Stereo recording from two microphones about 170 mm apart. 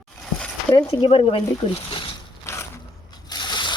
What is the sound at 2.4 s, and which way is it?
Mechanisms, 15° left (ahead or behind).